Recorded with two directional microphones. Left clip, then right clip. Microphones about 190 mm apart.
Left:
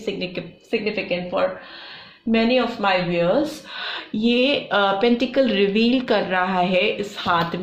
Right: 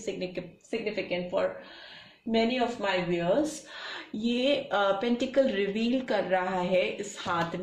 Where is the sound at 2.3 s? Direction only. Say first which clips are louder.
Left 8 dB; 25° left (ahead or behind).